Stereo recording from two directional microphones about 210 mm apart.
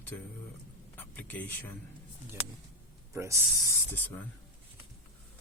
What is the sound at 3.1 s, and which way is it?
Speech, 15° right (ahead or behind).